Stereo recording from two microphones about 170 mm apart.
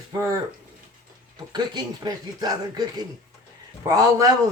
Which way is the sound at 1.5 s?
25° right (ahead or behind).